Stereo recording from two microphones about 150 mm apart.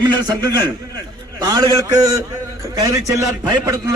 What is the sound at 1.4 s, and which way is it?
A man's voice, 25° right (ahead or behind).